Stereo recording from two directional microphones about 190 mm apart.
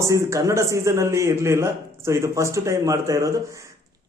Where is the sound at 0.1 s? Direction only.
15° right (ahead or behind).